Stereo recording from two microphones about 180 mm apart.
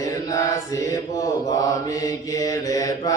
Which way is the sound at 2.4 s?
20° left (ahead or behind).